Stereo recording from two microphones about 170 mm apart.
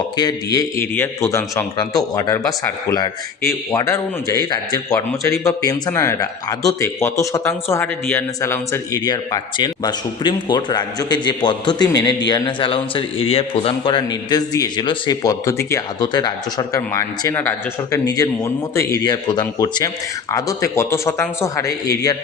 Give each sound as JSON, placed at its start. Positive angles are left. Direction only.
{"t": 0.2, "sound": "speech", "side_deg": 20}